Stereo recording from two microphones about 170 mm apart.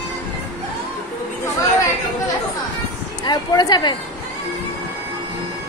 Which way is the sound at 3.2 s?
25° left (ahead or behind).